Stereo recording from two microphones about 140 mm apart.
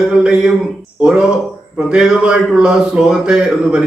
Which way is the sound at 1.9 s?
5° right (ahead or behind).